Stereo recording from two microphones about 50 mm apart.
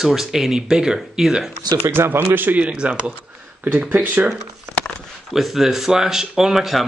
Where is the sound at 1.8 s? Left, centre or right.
Right.